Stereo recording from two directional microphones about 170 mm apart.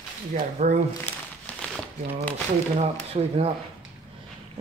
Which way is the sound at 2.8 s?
35° right (ahead or behind).